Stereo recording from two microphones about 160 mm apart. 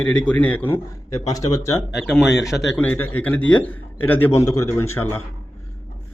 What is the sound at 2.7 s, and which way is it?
A man's voice, 10° left (ahead or behind).